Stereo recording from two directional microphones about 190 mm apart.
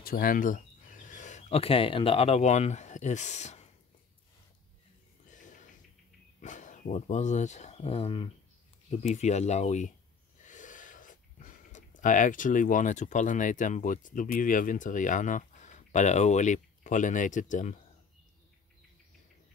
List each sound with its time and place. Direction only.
0.0 s speech: 50° left (ahead or behind)
5.3 s snort: 40° left (ahead or behind)
6.4 s speech: 40° left (ahead or behind)